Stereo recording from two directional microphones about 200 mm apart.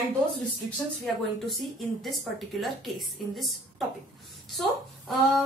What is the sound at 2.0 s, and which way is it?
A woman's voice, centre (ahead or behind).